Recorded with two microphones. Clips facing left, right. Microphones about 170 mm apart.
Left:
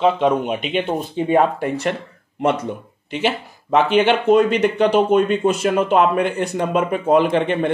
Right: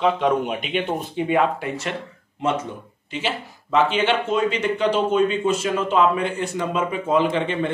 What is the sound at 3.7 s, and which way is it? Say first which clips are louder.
Speech: left 4 dB; 60° left (ahead or behind).